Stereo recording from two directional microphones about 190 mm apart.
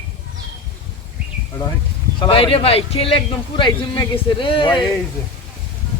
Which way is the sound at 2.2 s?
30° left (ahead or behind).